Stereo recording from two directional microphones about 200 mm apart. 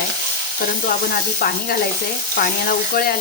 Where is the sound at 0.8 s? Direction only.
50° left (ahead or behind).